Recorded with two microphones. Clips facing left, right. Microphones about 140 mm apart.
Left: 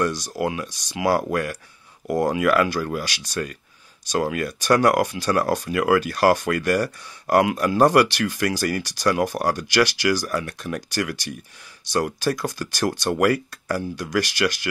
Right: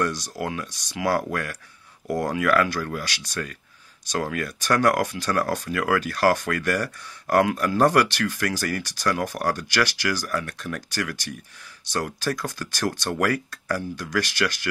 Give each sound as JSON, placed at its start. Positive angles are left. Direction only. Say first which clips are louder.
{"t": 0.0, "sound": "speech", "louder": "left 3 dB", "side_deg": 15}